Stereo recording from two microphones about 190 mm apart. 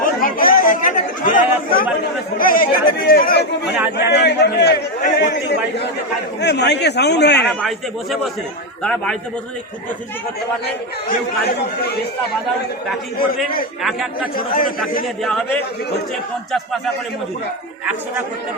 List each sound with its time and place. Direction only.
0.0 s a man's voice: 50° left (ahead or behind)
8.8 s a man's voice: 5° left (ahead or behind)
13.1 s speech: 50° left (ahead or behind)
13.8 s a man's voice: centre (ahead or behind)
14.3 s speech: 45° left (ahead or behind)
15.0 s a man's voice: centre (ahead or behind)
16.5 s a man's voice: centre (ahead or behind)